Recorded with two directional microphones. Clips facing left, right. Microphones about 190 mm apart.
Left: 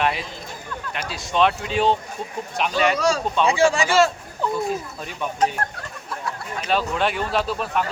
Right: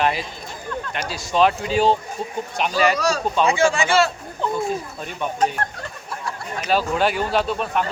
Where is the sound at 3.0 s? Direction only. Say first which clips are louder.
Left 1 dB; 25° left (ahead or behind).